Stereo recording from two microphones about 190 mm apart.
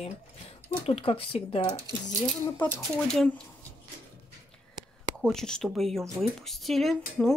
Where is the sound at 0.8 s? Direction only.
30° left (ahead or behind).